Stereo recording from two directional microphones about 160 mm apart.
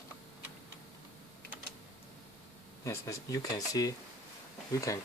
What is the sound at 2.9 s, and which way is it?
Speech, 20° left (ahead or behind).